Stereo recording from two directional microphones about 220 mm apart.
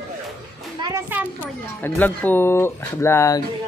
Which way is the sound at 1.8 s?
10° left (ahead or behind).